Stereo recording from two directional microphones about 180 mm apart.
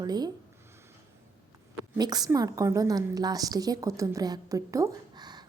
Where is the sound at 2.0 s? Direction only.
20° right (ahead or behind).